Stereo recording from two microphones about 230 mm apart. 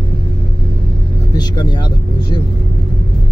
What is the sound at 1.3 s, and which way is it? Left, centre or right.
Speech, centre.